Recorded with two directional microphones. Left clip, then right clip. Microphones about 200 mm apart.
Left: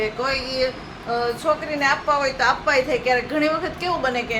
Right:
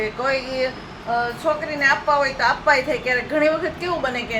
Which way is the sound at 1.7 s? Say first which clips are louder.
Right 5 dB; 5° right (ahead or behind).